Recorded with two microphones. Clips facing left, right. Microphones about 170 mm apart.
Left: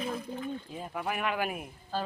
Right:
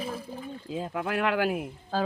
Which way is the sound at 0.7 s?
90° right.